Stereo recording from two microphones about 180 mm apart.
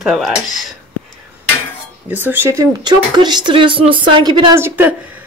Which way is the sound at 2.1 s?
10° right (ahead or behind).